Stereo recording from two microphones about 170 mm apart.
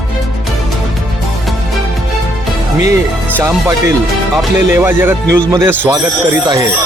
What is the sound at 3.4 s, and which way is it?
Speech, 20° right (ahead or behind).